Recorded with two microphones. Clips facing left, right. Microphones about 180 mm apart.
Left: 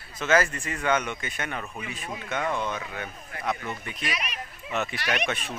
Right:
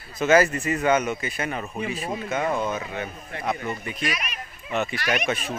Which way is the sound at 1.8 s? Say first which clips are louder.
Right 8 dB; 35° right (ahead or behind).